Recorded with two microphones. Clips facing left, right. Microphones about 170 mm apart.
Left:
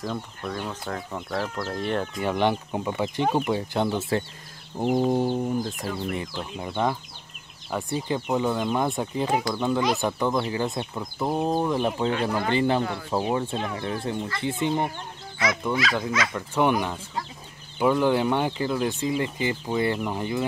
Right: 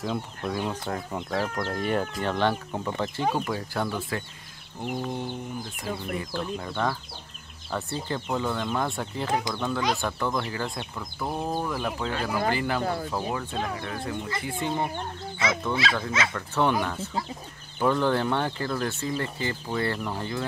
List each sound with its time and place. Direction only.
0.0 s speech: 5° right (ahead or behind)
2.2 s speech: 15° left (ahead or behind)
4.7 s chicken: 45° left (ahead or behind)
5.0 s speech: 40° left (ahead or behind)
6.1 s speech: 20° left (ahead or behind)
15.7 s speech: 30° right (ahead or behind)
16.3 s speech: 15° left (ahead or behind)